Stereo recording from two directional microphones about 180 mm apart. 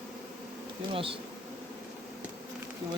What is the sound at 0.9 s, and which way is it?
Bee, 30° right (ahead or behind).